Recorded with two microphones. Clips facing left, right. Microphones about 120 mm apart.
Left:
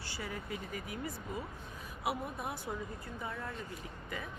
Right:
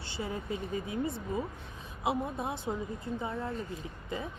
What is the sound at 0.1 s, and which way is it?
Speech, 25° right (ahead or behind).